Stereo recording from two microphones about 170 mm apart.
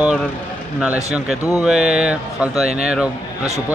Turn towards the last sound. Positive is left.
turn(degrees=-5)  # may be behind; listen again after turning